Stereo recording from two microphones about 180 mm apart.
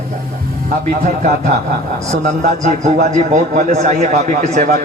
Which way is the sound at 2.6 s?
40° right (ahead or behind).